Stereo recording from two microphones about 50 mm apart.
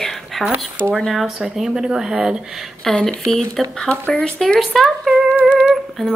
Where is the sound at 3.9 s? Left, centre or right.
Centre.